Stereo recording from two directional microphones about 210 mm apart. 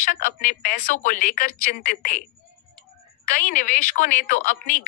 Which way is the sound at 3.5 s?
40° left (ahead or behind).